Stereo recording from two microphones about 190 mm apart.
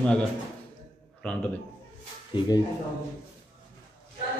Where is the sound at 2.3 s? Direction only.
25° left (ahead or behind).